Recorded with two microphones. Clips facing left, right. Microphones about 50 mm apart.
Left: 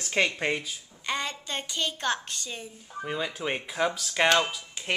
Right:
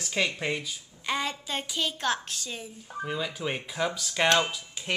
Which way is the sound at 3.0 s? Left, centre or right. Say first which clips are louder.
Even; centre.